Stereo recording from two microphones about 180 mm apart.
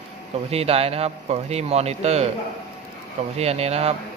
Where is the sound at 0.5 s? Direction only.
35° right (ahead or behind).